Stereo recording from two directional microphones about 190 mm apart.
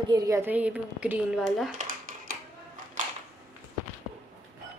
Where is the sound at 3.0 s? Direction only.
40° right (ahead or behind).